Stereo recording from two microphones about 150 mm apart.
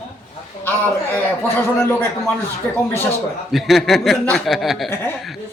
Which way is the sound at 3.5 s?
Centre (ahead or behind).